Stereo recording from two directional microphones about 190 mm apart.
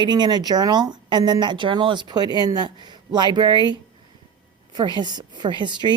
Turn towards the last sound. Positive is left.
turn(degrees=-25)  # may be behind; listen again after turning